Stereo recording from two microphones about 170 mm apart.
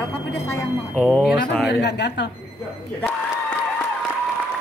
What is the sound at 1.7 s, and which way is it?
Speech, 85° left.